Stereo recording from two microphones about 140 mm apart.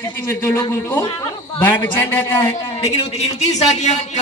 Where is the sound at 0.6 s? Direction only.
25° left (ahead or behind).